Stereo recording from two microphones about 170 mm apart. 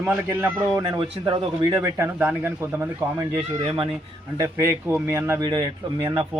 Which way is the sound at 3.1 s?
25° right (ahead or behind).